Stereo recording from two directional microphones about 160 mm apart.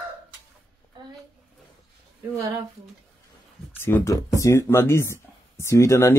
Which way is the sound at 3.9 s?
15° left (ahead or behind).